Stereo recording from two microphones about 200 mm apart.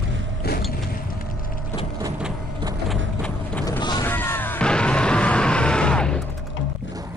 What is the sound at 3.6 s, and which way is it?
Boat, 20° left (ahead or behind).